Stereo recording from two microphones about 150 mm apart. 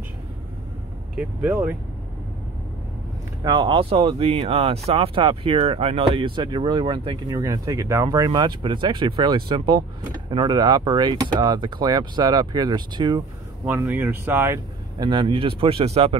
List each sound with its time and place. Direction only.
1.1 s speech: 10° right (ahead or behind)
3.4 s speech: 35° right (ahead or behind)
13.7 s speech: 15° right (ahead or behind)
15.0 s speech: 30° right (ahead or behind)